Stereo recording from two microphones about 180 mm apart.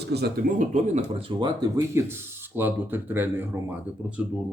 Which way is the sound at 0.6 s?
40° right (ahead or behind).